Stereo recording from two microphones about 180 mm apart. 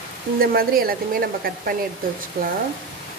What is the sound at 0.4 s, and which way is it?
Speech, 55° right (ahead or behind).